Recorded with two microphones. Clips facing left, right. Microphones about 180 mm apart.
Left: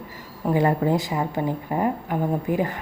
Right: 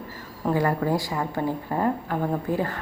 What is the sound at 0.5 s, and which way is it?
A woman's voice, 20° left (ahead or behind).